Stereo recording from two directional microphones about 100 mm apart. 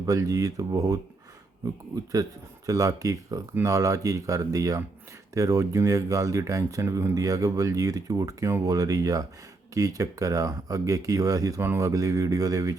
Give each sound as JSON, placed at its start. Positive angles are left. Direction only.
{"t": 0.0, "sound": "speech", "side_deg": -35}
{"t": 2.6, "sound": "speech", "side_deg": -35}
{"t": 11.6, "sound": "a man's voice", "side_deg": -25}
{"t": 11.9, "sound": "speech", "side_deg": -35}